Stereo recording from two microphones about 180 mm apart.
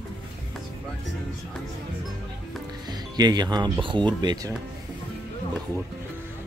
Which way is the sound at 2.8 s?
20° right (ahead or behind).